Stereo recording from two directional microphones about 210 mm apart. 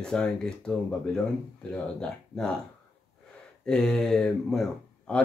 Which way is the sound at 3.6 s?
5° left (ahead or behind).